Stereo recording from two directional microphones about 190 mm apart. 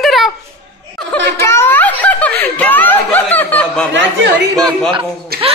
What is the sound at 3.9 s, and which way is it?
Speech, 70° right (ahead or behind).